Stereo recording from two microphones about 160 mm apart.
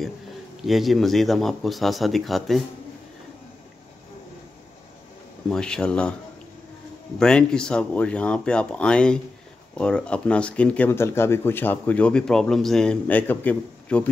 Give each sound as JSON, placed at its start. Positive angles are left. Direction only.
{"t": 0.6, "sound": "speech", "side_deg": 0}
{"t": 5.5, "sound": "speech", "side_deg": 5}
{"t": 7.2, "sound": "speech", "side_deg": 5}